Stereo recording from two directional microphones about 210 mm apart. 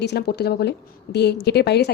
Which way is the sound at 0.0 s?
50° left (ahead or behind).